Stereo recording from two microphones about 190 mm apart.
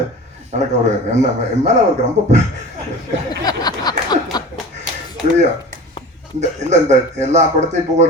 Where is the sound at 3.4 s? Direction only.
20° left (ahead or behind).